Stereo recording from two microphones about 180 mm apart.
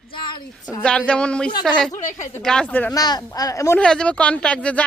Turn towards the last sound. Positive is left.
turn(degrees=5)  # may be behind; listen again after turning